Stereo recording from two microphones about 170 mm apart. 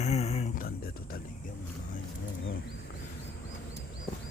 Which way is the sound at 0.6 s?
60° left (ahead or behind).